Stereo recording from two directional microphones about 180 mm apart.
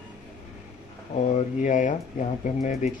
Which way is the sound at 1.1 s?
40° left (ahead or behind).